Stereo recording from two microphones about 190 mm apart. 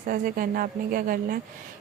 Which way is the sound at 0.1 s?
50° right (ahead or behind).